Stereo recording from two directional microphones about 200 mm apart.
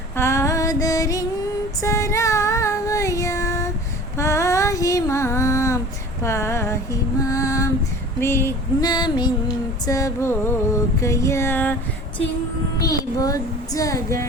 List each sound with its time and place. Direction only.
0.2 s female singing: 15° left (ahead or behind)
1.8 s child singing: 15° left (ahead or behind)
4.2 s female singing: 15° left (ahead or behind)
8.2 s a sound: 10° left (ahead or behind)
9.8 s speech: 15° left (ahead or behind)
12.8 s speech: 15° left (ahead or behind)